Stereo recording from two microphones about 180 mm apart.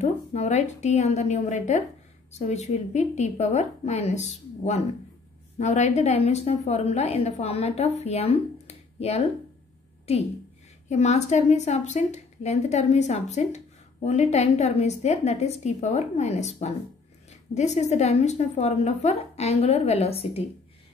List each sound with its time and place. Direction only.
0.0 s a woman's voice: 40° left (ahead or behind)